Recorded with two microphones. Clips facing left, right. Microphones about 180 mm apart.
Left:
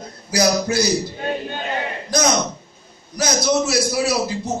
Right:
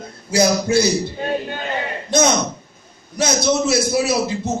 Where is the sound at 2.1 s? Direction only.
25° right (ahead or behind).